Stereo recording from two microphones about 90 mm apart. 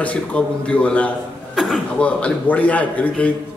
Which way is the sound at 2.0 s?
15° left (ahead or behind).